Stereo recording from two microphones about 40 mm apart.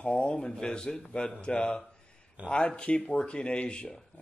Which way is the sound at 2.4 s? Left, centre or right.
Right.